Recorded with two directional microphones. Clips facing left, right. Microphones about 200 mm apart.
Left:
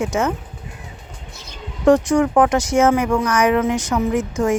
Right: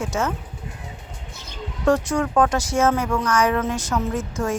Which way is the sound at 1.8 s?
15° left (ahead or behind).